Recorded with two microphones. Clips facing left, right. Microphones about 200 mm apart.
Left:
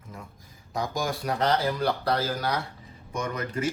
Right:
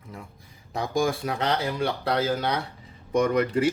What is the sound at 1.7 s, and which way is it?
Speech, 25° right (ahead or behind).